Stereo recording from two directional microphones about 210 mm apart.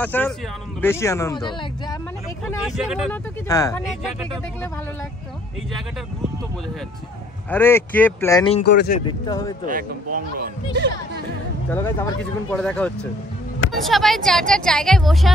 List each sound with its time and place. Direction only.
0.0 s speech: 10° left (ahead or behind)
2.7 s a woman's voice: centre (ahead or behind)
3.4 s speech: 15° left (ahead or behind)
7.5 s speech: 10° left (ahead or behind)
8.6 s speech: 50° left (ahead or behind)
9.0 s speech: 20° left (ahead or behind)
10.1 s speech: 45° right (ahead or behind)
11.7 s a woman's voice: 10° left (ahead or behind)